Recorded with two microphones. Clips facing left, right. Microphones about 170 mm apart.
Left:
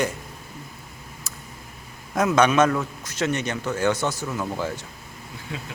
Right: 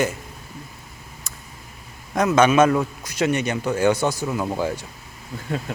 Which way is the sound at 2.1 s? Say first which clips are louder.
Right 2 dB; centre (ahead or behind).